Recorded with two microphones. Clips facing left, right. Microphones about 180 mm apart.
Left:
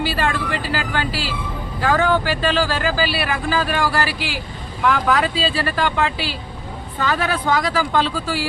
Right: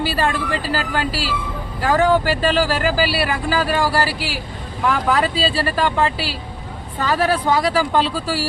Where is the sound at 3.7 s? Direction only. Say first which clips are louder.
Right 2 dB; 35° right (ahead or behind).